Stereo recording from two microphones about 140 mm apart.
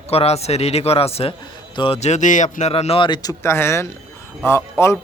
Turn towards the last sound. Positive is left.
turn(degrees=20)  # may be behind; listen again after turning